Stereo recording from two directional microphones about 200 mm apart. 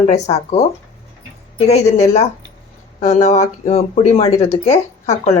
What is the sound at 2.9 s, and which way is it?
Speech, 35° left (ahead or behind).